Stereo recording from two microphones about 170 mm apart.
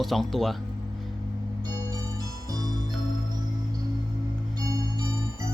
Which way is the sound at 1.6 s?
20° right (ahead or behind).